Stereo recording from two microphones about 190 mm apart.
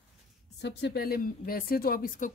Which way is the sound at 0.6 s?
65° left (ahead or behind).